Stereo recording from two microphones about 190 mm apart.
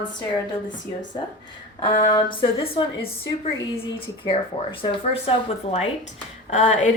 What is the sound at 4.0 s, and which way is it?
A woman's voice, 30° left (ahead or behind).